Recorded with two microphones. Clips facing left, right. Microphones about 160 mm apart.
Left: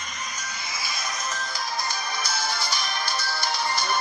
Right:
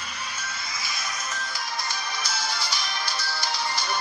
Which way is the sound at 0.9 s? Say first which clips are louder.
Left 3 dB; 45° left (ahead or behind).